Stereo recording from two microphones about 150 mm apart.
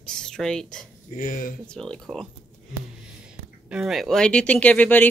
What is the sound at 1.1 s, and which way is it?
Speech, 70° left (ahead or behind).